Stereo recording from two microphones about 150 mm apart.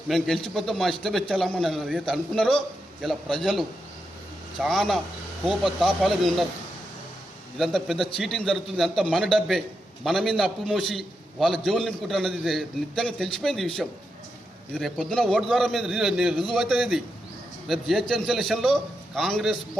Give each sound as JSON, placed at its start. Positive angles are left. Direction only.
{"t": 0.1, "sound": "a man's voice", "side_deg": 5}
{"t": 7.6, "sound": "a man's voice", "side_deg": 0}